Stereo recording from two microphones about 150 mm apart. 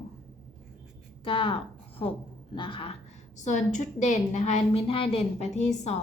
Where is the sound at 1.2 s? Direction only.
35° left (ahead or behind).